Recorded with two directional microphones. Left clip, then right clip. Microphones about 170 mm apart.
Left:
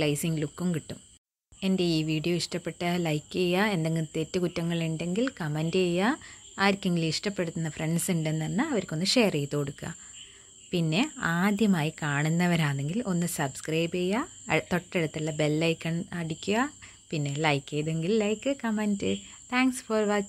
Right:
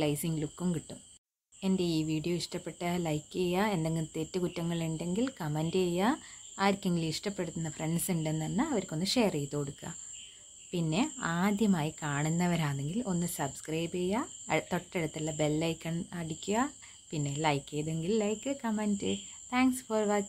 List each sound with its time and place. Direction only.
0.0 s speech: 15° left (ahead or behind)